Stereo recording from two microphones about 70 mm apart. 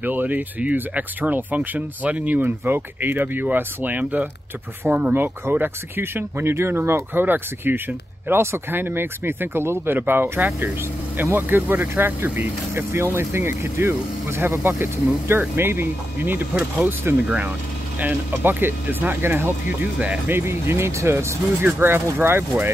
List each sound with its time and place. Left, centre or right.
0.0 s speech: right
5.2 s speech: right
17.9 s speech: right